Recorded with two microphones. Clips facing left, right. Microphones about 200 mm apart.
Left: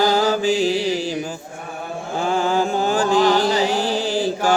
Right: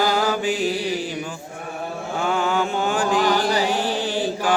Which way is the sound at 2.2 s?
35° left (ahead or behind).